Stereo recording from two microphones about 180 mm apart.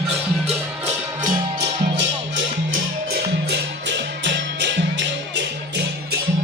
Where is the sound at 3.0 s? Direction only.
60° right (ahead or behind).